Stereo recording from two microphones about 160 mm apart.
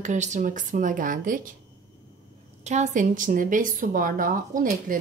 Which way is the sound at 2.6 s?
50° right (ahead or behind).